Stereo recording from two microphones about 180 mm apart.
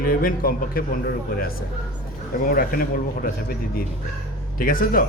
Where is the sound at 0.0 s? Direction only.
50° left (ahead or behind).